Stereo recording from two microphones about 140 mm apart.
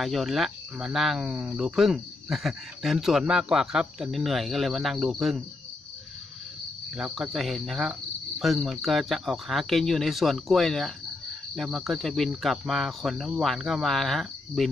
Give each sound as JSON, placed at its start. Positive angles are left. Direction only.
{"t": 0.0, "sound": "speech", "side_deg": 0}
{"t": 7.0, "sound": "speech", "side_deg": 0}